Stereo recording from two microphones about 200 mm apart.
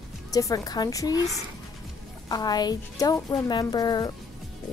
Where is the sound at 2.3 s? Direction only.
20° left (ahead or behind).